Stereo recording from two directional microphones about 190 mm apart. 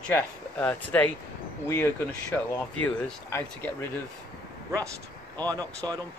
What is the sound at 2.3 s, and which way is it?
Speech, 5° left (ahead or behind).